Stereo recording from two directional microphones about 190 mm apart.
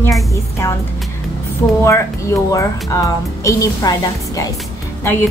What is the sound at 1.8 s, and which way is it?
A woman's voice, 15° left (ahead or behind).